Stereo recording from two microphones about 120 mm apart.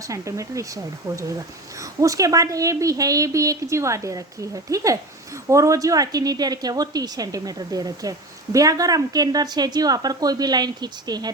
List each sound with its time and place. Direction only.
0.0 s a woman's voice: 25° right (ahead or behind)